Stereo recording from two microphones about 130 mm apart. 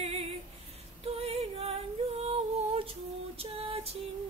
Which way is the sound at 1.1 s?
50° right (ahead or behind).